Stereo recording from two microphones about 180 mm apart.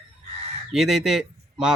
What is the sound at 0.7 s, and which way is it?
Speech, centre (ahead or behind).